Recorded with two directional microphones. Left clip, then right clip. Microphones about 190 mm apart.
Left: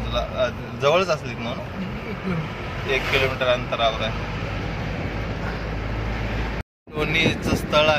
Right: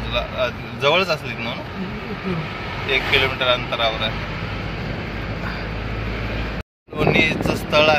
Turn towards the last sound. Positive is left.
turn(degrees=-5)  # may be behind; listen again after turning